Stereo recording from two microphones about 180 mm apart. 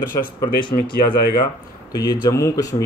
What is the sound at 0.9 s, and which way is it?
Speech, 60° left (ahead or behind).